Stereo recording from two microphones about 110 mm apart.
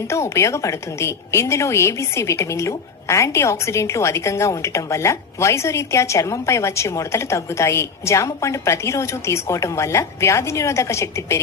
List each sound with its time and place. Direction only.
0.1 s a woman's voice: 25° left (ahead or behind)